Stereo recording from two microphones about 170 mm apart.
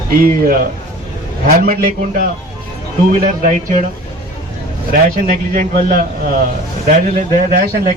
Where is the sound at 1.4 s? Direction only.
60° right (ahead or behind).